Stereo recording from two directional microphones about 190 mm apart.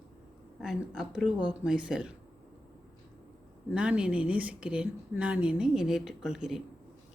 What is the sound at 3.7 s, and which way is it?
A woman's voice, 5° right (ahead or behind).